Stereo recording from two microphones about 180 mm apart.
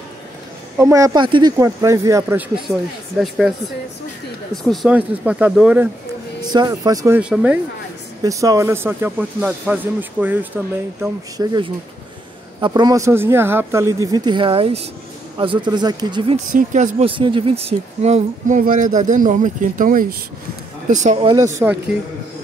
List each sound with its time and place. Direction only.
0.7 s a man's voice: 15° right (ahead or behind)
3.2 s speech: centre (ahead or behind)
4.6 s a man's voice: 5° right (ahead or behind)
6.4 s speech: 25° right (ahead or behind)
7.2 s a man's voice: 10° right (ahead or behind)
8.2 s a man's voice: 20° right (ahead or behind)
11.0 s speech: 20° right (ahead or behind)
16.5 s speech: 45° right (ahead or behind)
17.1 s speech: 30° right (ahead or behind)
18.6 s speech: 50° right (ahead or behind)
21.2 s a man's voice: 20° right (ahead or behind)